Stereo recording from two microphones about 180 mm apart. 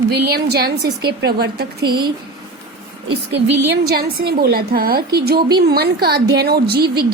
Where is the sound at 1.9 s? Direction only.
25° right (ahead or behind).